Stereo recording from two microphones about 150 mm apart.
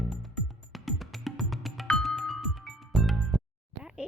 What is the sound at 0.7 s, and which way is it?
Music, centre (ahead or behind).